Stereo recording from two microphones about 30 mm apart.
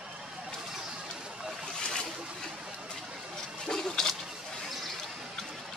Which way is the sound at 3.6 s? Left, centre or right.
Left.